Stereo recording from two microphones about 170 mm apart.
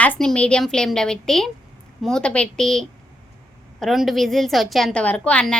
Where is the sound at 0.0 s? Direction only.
5° left (ahead or behind).